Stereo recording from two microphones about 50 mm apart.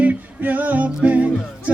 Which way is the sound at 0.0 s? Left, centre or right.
Right.